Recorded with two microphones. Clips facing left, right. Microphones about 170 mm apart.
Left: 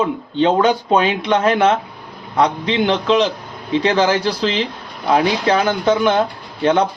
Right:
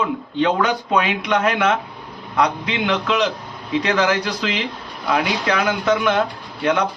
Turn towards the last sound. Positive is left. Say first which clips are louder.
# left 4 dB
turn(degrees=30)  # may be behind; listen again after turning